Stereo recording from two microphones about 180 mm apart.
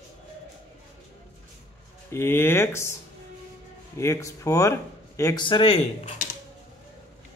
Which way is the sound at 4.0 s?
15° left (ahead or behind).